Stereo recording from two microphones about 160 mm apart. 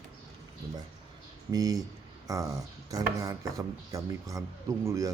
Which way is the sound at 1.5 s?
20° right (ahead or behind).